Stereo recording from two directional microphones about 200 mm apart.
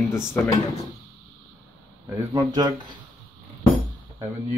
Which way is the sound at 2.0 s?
15° right (ahead or behind).